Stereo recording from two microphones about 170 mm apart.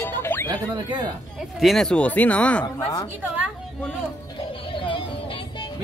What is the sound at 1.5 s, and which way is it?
Speech, centre (ahead or behind).